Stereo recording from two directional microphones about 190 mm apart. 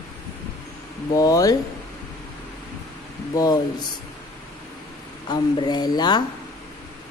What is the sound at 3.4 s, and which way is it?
Speech, 20° left (ahead or behind).